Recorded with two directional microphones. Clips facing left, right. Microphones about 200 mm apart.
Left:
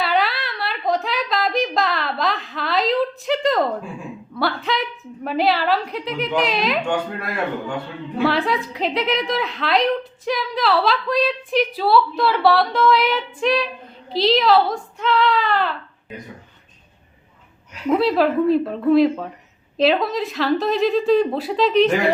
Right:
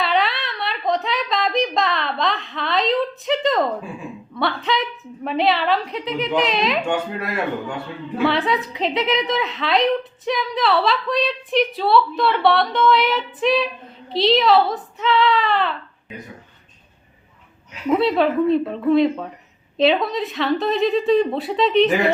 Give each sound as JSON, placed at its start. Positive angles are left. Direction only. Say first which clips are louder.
{"t": 0.0, "sound": "a sound", "louder": "even", "side_deg": 0}
{"t": 4.4, "sound": "a woman's voice", "louder": "even", "side_deg": 0}
{"t": 17.8, "sound": "a woman's voice", "louder": "even", "side_deg": 0}